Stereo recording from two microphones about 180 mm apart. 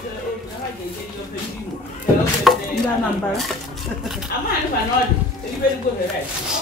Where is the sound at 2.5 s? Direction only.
Centre (ahead or behind).